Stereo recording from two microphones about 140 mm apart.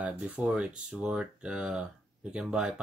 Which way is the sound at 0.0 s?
5° right (ahead or behind).